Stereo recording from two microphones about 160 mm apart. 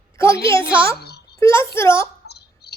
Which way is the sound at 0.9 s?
90° left.